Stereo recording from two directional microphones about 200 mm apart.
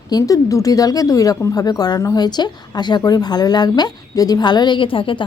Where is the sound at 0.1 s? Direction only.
20° left (ahead or behind).